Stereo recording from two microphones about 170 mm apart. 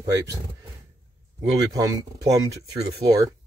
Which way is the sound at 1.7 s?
20° right (ahead or behind).